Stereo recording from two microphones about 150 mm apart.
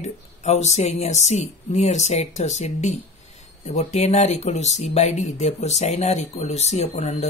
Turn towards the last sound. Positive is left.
turn(degrees=45)  # may be behind; listen again after turning